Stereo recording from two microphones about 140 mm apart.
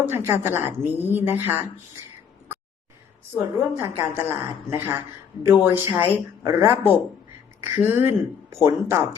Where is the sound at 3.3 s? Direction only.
20° right (ahead or behind).